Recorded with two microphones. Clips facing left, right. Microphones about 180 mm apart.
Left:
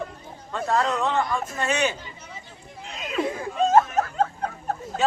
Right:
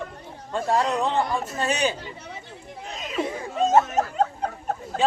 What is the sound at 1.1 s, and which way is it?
Speech, 35° right (ahead or behind).